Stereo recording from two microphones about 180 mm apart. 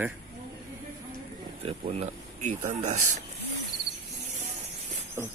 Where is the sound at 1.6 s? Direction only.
35° right (ahead or behind).